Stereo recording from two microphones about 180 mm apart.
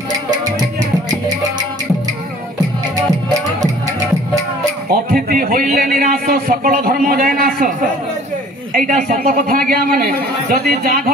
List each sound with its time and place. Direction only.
4.8 s a man's voice: 55° right (ahead or behind)
8.7 s a man's voice: 50° right (ahead or behind)